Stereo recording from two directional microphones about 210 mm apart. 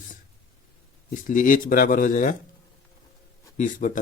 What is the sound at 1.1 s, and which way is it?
Speech, 40° left (ahead or behind).